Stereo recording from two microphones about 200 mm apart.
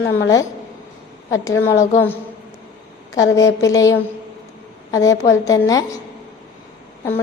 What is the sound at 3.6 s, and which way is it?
Speech, 15° left (ahead or behind).